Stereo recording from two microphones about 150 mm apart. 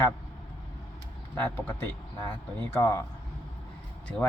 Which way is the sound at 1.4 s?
15° left (ahead or behind).